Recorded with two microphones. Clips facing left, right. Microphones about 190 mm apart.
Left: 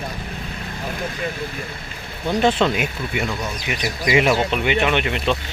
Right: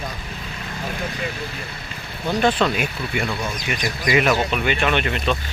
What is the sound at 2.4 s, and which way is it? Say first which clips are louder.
Speech: left 1 dB; 25° left (ahead or behind).